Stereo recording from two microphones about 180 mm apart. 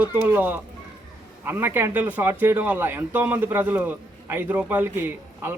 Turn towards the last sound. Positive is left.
turn(degrees=-10)  # may be behind; listen again after turning